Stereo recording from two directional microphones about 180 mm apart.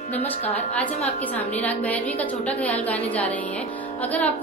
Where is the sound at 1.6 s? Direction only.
10° left (ahead or behind).